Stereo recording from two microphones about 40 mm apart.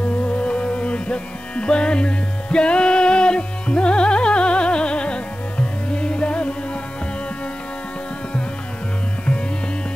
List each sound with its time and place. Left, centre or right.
0.4 s music: left